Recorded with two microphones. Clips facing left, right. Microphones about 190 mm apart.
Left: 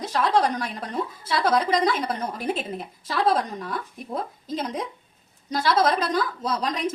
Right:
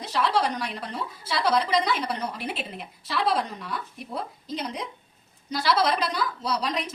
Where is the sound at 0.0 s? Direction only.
45° left (ahead or behind).